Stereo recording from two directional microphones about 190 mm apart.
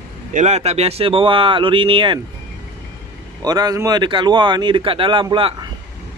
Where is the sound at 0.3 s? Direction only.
40° right (ahead or behind).